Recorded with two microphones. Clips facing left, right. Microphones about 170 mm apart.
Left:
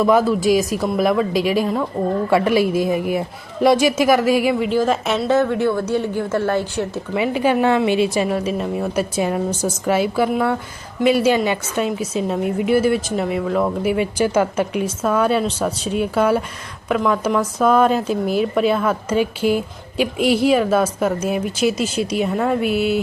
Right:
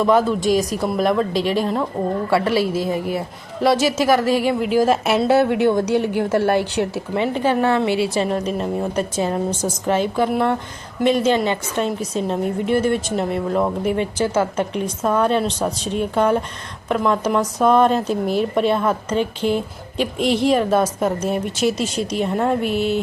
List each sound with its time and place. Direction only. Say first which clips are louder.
0.0 s a woman's voice: left 1 dB; 5° left (ahead or behind)
2.3 s a woman's voice: left 2 dB; 15° left (ahead or behind)
4.6 s a woman's voice: right 1 dB; 5° right (ahead or behind)
7.2 s a woman's voice: left 1 dB; 10° left (ahead or behind)
8.2 s a woman's voice: left 1 dB; 5° left (ahead or behind)
13.9 s a woman's voice: left 2 dB; 10° left (ahead or behind)